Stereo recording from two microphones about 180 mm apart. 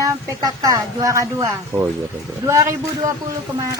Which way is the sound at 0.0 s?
20° right (ahead or behind).